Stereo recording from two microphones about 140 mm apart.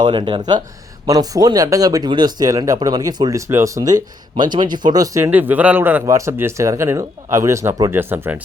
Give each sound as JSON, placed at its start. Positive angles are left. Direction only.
{"t": 0.0, "sound": "speech", "side_deg": -35}